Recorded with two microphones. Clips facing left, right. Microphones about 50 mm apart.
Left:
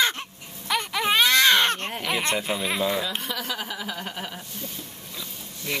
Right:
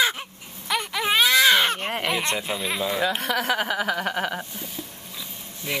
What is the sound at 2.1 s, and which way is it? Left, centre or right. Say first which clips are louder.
Speech: left 1 dB; centre.